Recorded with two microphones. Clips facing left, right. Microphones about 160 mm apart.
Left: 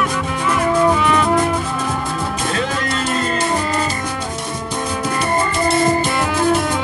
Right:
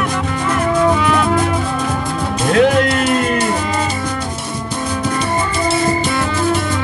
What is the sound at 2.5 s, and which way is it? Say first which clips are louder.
Music: right 14 dB; 70° right (ahead or behind).